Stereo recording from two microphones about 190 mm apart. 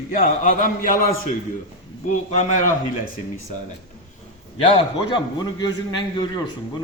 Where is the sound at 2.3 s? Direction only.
40° left (ahead or behind).